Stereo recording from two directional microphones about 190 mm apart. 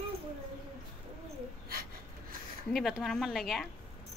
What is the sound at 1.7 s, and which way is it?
Gasp, 50° right (ahead or behind).